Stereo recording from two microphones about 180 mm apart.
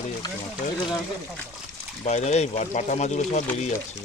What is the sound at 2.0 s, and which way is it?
Speech, 40° left (ahead or behind).